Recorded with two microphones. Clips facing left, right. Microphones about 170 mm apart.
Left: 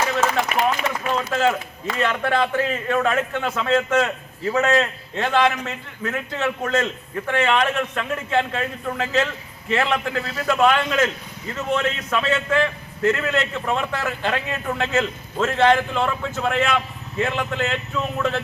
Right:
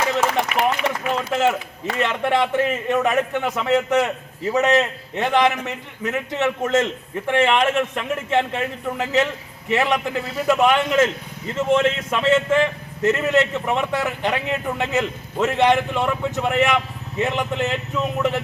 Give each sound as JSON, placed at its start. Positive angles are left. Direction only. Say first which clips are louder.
{"t": 0.2, "sound": "a man's voice", "louder": "right 1 dB", "side_deg": -15}